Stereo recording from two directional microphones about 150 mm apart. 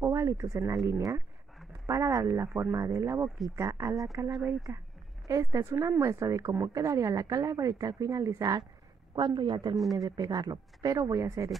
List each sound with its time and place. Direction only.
0.0 s a woman's voice: 20° right (ahead or behind)